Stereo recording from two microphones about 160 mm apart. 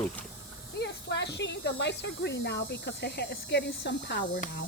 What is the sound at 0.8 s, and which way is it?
Speech, 90° left.